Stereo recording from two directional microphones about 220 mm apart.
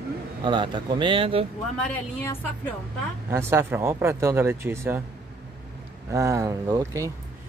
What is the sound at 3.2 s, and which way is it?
Speech, 10° right (ahead or behind).